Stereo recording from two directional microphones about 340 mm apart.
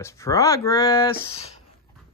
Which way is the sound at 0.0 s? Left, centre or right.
Centre.